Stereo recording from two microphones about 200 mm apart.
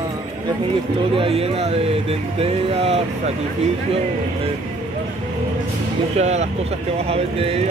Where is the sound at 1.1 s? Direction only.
30° right (ahead or behind).